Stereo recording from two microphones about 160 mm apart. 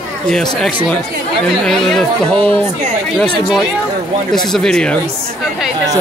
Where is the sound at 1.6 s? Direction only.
Centre (ahead or behind).